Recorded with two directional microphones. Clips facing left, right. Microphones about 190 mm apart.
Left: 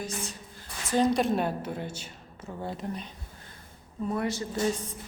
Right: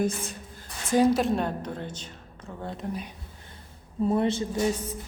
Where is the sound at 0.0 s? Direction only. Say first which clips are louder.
Right 8 dB; 55° right (ahead or behind).